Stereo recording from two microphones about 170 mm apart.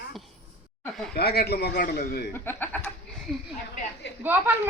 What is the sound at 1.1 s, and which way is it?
A man's voice, 70° left (ahead or behind).